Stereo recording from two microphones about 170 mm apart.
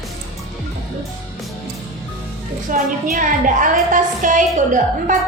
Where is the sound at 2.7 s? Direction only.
50° right (ahead or behind).